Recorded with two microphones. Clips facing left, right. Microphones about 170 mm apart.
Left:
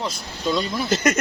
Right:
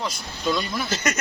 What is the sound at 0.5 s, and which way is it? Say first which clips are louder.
Speech: left 7 dB; 25° left (ahead or behind).